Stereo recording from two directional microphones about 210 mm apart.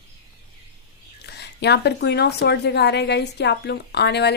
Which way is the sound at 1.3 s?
50° left (ahead or behind).